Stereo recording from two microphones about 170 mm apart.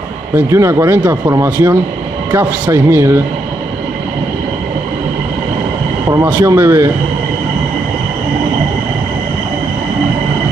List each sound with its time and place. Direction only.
0.4 s speech: 15° right (ahead or behind)
6.2 s speech: 15° right (ahead or behind)